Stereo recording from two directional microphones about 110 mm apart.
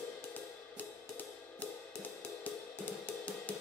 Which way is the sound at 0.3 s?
15° left (ahead or behind).